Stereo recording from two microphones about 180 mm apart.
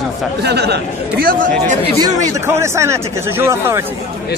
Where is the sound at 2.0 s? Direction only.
15° right (ahead or behind).